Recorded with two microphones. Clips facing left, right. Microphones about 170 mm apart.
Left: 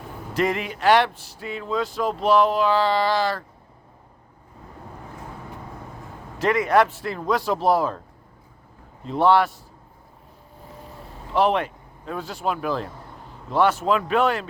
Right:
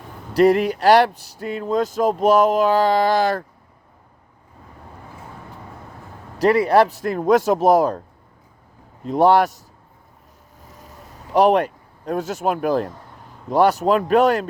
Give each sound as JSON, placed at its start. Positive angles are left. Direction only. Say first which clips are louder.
{"t": 0.3, "sound": "speech", "louder": "right 9 dB", "side_deg": -40}
{"t": 6.4, "sound": "speech", "louder": "right 4 dB", "side_deg": -35}
{"t": 9.0, "sound": "speech", "louder": "right 3 dB", "side_deg": -40}
{"t": 10.6, "sound": "boat", "louder": "left 3 dB", "side_deg": -40}
{"t": 11.3, "sound": "speech", "louder": "right 5 dB", "side_deg": -40}